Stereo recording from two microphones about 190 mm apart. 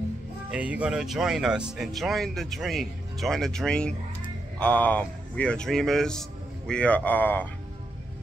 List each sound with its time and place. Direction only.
0.5 s a man's voice: 5° right (ahead or behind); by 7.4 s 10° left (ahead or behind)